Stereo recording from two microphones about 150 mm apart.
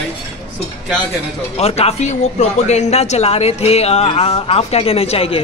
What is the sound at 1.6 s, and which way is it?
Speech, 40° left (ahead or behind).